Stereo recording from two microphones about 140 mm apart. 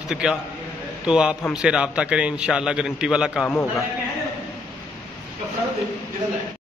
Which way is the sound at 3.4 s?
15° left (ahead or behind).